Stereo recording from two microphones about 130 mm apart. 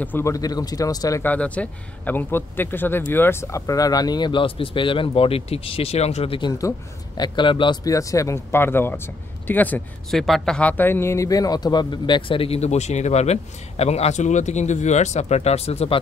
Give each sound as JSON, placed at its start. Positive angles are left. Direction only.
{"t": 0.0, "sound": "speech", "side_deg": 15}
{"t": 0.3, "sound": "speech", "side_deg": 30}
{"t": 1.2, "sound": "speech", "side_deg": 10}
{"t": 10.1, "sound": "speech", "side_deg": 0}